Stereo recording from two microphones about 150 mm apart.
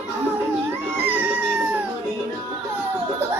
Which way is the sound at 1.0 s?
10° right (ahead or behind).